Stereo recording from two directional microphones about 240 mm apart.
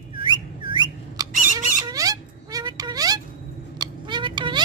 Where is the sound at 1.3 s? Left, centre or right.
Right.